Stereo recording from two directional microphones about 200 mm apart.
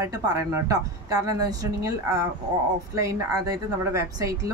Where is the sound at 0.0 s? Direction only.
15° right (ahead or behind).